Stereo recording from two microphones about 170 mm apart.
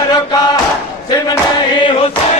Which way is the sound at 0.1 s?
25° left (ahead or behind).